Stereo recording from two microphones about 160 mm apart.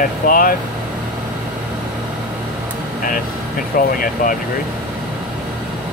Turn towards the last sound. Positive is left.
turn(degrees=60)  # may be behind; listen again after turning